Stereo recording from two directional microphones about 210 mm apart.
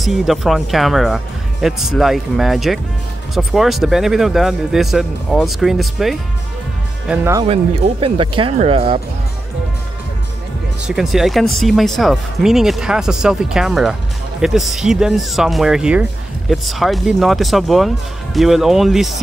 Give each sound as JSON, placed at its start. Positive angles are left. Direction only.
{"t": 0.0, "sound": "speech", "side_deg": 0}
{"t": 7.1, "sound": "speech", "side_deg": -15}
{"t": 7.4, "sound": "speech", "side_deg": -25}
{"t": 10.9, "sound": "speech", "side_deg": 0}